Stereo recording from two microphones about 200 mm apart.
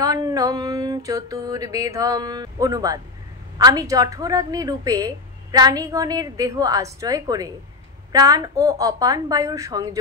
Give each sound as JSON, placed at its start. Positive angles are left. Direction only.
{"t": 0.0, "sound": "a woman's voice", "side_deg": -20}